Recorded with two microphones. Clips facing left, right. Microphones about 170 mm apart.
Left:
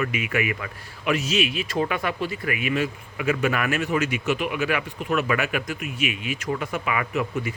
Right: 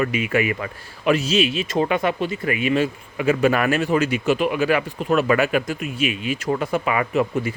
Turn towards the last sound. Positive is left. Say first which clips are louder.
# right 5 dB
turn(degrees=-30)  # may be behind; listen again after turning